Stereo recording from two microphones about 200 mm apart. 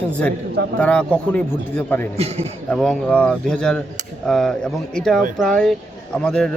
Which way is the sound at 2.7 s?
Centre (ahead or behind).